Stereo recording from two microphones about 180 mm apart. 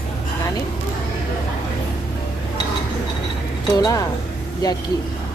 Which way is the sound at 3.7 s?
20° left (ahead or behind).